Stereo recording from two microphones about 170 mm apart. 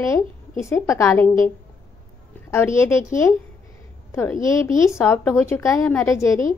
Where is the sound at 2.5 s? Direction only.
15° left (ahead or behind).